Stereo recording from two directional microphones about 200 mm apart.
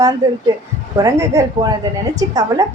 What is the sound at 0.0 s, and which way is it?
A woman's voice, 15° right (ahead or behind).